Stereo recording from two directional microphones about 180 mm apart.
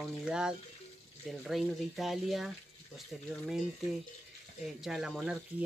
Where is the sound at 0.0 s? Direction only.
5° right (ahead or behind).